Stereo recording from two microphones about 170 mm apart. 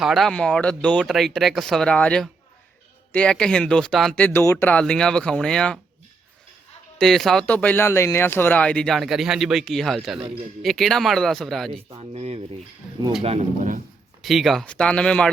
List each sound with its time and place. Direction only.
0.0 s speech: centre (ahead or behind)
7.0 s speech: centre (ahead or behind)
10.2 s speech: 30° right (ahead or behind)
10.6 s speech: centre (ahead or behind)
11.9 s speech: 35° right (ahead or behind)
14.2 s speech: centre (ahead or behind)